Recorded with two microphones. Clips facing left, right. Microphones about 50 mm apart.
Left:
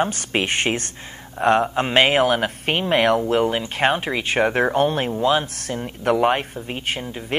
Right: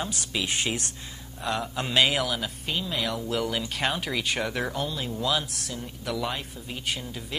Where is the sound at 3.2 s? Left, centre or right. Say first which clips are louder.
Left 9 dB; left.